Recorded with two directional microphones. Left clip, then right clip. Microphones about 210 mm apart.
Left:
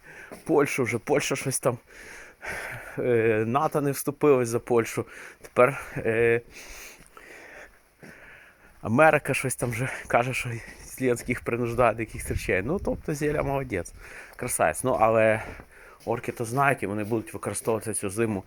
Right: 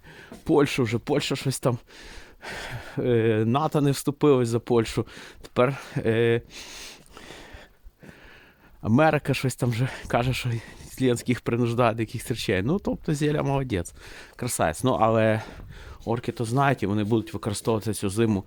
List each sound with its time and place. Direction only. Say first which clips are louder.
0.2 s speech: right 1 dB; 40° right (ahead or behind)
8.8 s speech: left 2 dB; 35° right (ahead or behind)